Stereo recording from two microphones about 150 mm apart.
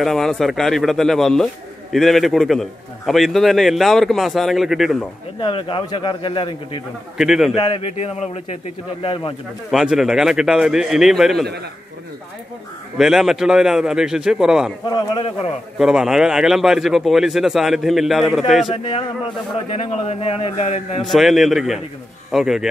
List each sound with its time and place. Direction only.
0.0 s a man's voice: centre (ahead or behind)
5.4 s a man's voice: 35° left (ahead or behind)
7.2 s a man's voice: 5° right (ahead or behind)
7.5 s speech: 35° left (ahead or behind)
9.0 s a man's voice: 35° left (ahead or behind)
9.7 s a man's voice: 5° right (ahead or behind)
12.9 s a man's voice: 5° right (ahead or behind)
15.0 s a man's voice: 30° left (ahead or behind)
15.8 s a man's voice: 5° right (ahead or behind)
18.7 s a man's voice: 35° left (ahead or behind)
21.0 s a man's voice: centre (ahead or behind)